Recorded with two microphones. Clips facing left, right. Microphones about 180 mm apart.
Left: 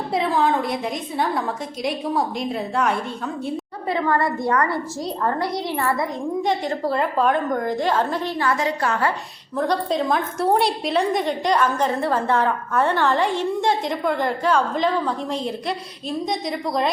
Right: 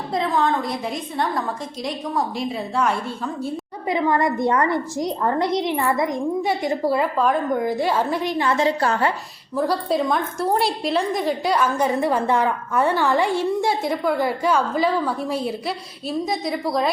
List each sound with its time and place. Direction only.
0.1 s a woman's voice: 5° left (ahead or behind)
3.8 s a woman's voice: 15° right (ahead or behind); by 9.0 s 30° right (ahead or behind)
9.6 s a woman's voice: 5° right (ahead or behind)